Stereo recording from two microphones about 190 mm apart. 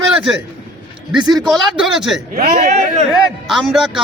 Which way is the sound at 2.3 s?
55° right (ahead or behind).